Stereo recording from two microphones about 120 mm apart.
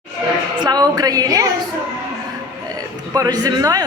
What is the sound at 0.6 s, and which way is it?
Speech, 35° right (ahead or behind).